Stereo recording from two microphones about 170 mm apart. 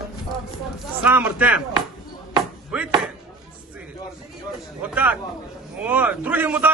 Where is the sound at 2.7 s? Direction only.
5° right (ahead or behind).